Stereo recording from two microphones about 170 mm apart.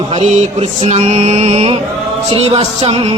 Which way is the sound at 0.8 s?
40° right (ahead or behind).